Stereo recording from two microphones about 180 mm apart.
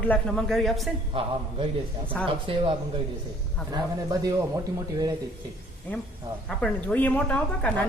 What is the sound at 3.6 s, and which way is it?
Speech, 5° left (ahead or behind).